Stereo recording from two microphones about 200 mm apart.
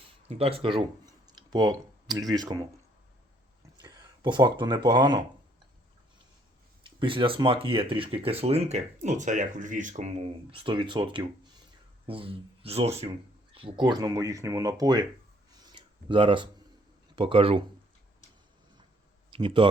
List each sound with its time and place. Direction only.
0.3 s speech: 30° right (ahead or behind)
3.8 s speech: 20° right (ahead or behind)
6.8 s speech: 25° right (ahead or behind)
15.6 s a sound: 25° right (ahead or behind)
17.2 s speech: 25° right (ahead or behind)
19.3 s speech: 25° right (ahead or behind)